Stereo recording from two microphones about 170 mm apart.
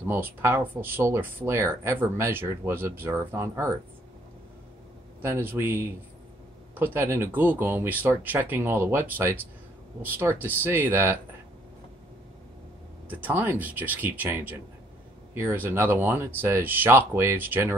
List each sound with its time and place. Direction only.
0.1 s speech: 15° right (ahead or behind)
5.2 s speech: 15° right (ahead or behind)
13.1 s speech: 10° right (ahead or behind)